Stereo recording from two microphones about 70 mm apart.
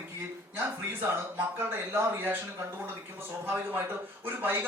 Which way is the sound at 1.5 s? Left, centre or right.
Right.